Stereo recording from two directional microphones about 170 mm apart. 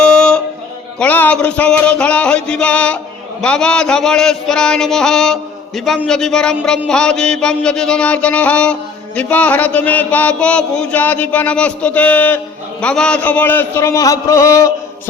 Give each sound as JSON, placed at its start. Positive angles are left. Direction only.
{"t": 0.0, "sound": "music", "side_deg": 5}
{"t": 0.9, "sound": "a man's voice", "side_deg": 10}